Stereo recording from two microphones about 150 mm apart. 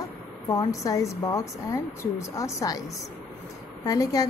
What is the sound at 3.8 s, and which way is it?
Speech, 25° left (ahead or behind).